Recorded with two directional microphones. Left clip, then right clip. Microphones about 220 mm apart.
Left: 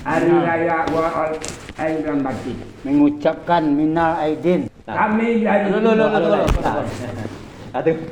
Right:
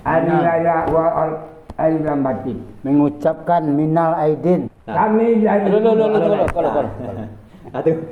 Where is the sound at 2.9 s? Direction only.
55° right (ahead or behind).